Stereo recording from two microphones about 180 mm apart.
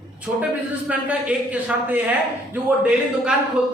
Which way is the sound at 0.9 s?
5° right (ahead or behind).